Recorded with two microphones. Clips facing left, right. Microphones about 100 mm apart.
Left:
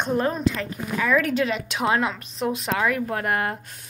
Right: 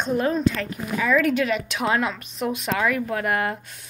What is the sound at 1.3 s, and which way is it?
A woman's voice, 30° left (ahead or behind).